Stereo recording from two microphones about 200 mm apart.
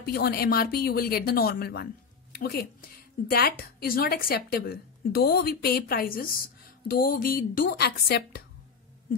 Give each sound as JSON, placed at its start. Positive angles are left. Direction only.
{"t": 0.0, "sound": "a woman's voice", "side_deg": 50}